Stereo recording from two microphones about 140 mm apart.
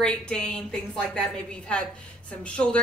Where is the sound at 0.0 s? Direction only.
5° left (ahead or behind).